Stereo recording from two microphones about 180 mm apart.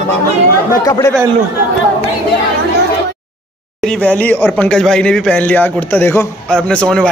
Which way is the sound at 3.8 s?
5° left (ahead or behind).